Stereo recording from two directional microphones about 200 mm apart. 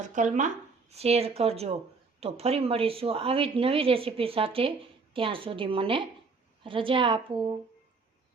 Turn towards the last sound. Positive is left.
turn(degrees=-25)  # may be behind; listen again after turning